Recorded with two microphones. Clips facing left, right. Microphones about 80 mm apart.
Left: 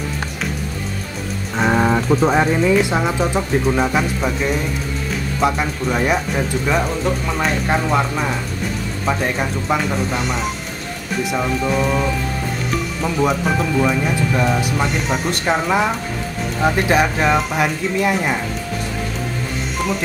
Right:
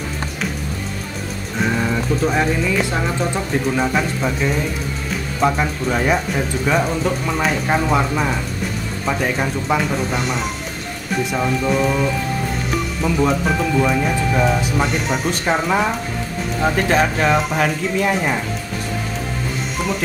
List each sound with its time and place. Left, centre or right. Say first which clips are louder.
1.6 s music: left 4 dB; left
2.7 s speech: left 4 dB; centre